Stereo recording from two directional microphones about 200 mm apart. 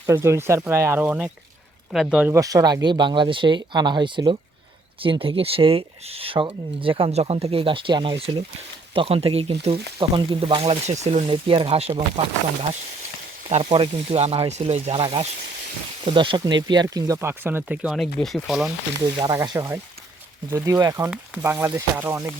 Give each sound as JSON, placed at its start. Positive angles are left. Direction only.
{"t": 0.0, "sound": "speech", "side_deg": -15}
{"t": 2.3, "sound": "speech", "side_deg": -15}
{"t": 13.5, "sound": "speech", "side_deg": -30}
{"t": 19.0, "sound": "speech", "side_deg": -20}